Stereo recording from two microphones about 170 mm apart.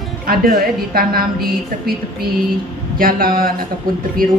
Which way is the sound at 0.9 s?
60° right (ahead or behind).